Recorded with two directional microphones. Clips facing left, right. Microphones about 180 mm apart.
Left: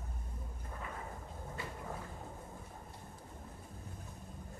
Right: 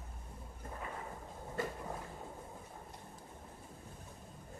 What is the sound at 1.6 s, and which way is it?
Vehicle, 45° right (ahead or behind).